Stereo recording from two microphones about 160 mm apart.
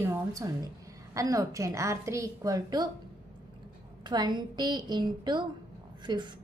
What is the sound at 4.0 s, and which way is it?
A woman's voice, 25° right (ahead or behind).